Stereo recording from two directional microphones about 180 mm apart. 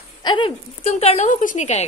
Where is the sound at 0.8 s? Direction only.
35° left (ahead or behind).